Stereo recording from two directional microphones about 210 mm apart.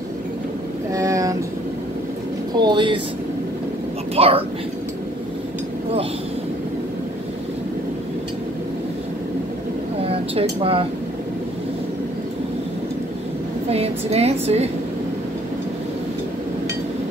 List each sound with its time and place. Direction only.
0.9 s a sound: 15° right (ahead or behind)
2.5 s a woman's voice: 20° right (ahead or behind)
4.1 s a woman's voice: 25° right (ahead or behind)
10.0 s speech: 25° right (ahead or behind)
13.7 s a woman's voice: 30° right (ahead or behind)